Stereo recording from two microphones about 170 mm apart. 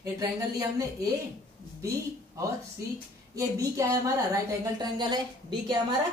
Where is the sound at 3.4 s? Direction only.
20° right (ahead or behind).